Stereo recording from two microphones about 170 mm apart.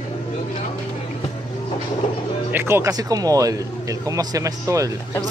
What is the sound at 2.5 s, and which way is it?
Speech, 15° right (ahead or behind).